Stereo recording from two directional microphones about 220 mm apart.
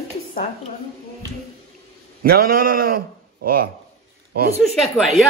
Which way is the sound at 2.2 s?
45° right (ahead or behind).